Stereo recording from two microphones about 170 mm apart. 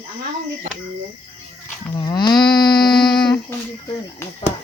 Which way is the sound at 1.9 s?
25° left (ahead or behind).